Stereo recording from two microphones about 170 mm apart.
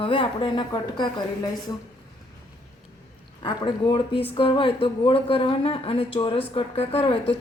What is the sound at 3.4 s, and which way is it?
A woman's voice, 25° left (ahead or behind).